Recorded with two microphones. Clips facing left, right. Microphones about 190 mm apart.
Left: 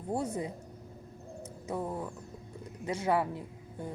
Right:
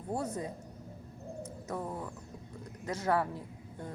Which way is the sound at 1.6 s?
15° left (ahead or behind).